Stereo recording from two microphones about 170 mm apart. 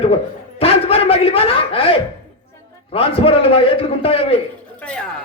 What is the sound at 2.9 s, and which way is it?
A man's voice, 35° left (ahead or behind).